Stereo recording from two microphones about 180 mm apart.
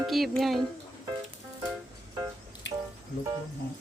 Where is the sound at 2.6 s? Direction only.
85° left.